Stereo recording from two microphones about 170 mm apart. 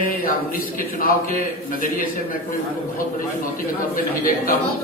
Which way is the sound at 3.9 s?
55° left (ahead or behind).